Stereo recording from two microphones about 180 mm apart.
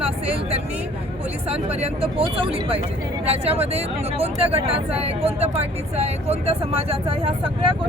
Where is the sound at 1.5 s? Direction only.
35° right (ahead or behind).